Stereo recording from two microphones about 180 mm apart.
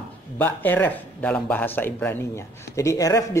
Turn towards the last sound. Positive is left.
turn(degrees=20)  # may be behind; listen again after turning